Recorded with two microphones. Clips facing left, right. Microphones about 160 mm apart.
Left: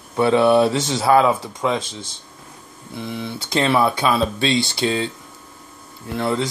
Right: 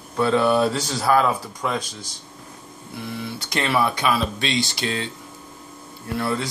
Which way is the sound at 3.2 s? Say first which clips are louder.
Left 6 dB; 25° left (ahead or behind).